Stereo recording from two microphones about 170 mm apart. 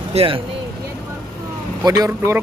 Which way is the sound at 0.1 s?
35° right (ahead or behind).